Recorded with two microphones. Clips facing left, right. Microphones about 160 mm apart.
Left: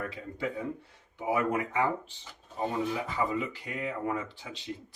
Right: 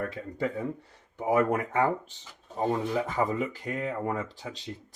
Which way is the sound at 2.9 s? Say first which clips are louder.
Right 3 dB; 45° right (ahead or behind).